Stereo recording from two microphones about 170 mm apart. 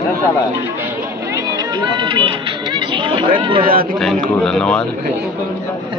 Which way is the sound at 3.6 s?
55° right (ahead or behind).